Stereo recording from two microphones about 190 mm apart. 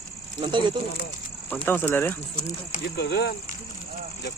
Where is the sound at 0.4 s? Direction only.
25° right (ahead or behind).